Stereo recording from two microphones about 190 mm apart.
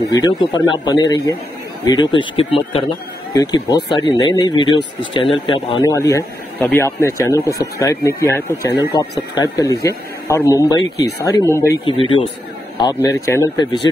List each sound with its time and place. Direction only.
0.1 s speech: 20° left (ahead or behind)
12.0 s speech: 30° left (ahead or behind)